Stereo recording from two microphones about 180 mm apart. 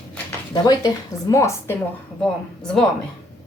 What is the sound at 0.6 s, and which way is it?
A woman's voice, 20° left (ahead or behind).